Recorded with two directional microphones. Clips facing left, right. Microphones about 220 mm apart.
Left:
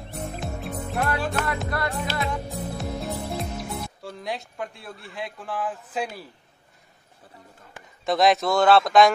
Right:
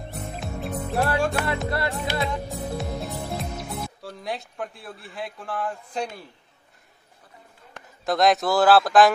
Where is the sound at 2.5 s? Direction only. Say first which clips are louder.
Right 1 dB; centre (ahead or behind).